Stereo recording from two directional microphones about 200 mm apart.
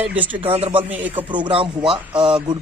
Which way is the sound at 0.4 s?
30° right (ahead or behind).